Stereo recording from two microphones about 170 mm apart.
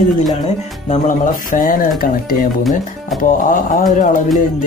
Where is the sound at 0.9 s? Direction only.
50° left (ahead or behind).